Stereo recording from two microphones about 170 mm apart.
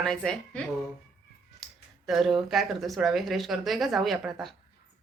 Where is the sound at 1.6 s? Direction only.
Centre (ahead or behind).